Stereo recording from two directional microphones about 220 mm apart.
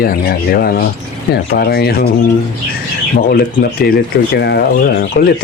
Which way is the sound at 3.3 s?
45° left (ahead or behind).